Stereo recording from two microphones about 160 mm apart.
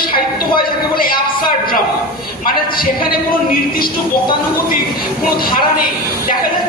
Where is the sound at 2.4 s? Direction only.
65° left (ahead or behind).